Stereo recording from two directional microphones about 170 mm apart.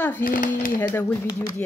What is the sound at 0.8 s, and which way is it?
Speech, 15° left (ahead or behind).